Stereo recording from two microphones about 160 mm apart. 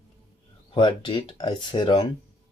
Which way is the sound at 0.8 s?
25° left (ahead or behind).